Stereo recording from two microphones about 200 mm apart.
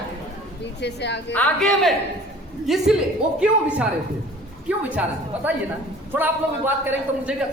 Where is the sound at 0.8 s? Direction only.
60° left (ahead or behind).